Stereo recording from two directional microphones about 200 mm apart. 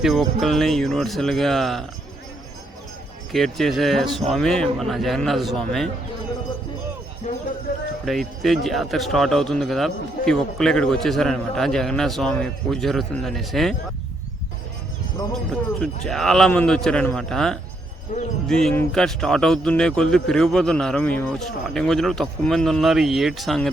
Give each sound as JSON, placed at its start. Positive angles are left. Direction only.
{"t": 0.0, "sound": "speech", "side_deg": 0}
{"t": 3.3, "sound": "speech", "side_deg": 0}
{"t": 7.3, "sound": "music", "side_deg": 40}
{"t": 8.0, "sound": "speech", "side_deg": 0}
{"t": 15.8, "sound": "speech", "side_deg": 5}